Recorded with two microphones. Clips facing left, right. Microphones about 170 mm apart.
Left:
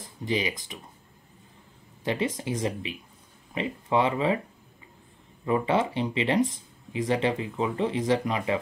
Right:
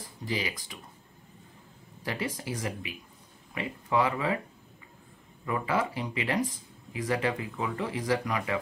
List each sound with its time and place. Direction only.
0.2 s speech: 20° left (ahead or behind)
2.0 s speech: 20° left (ahead or behind)
5.4 s speech: 25° left (ahead or behind)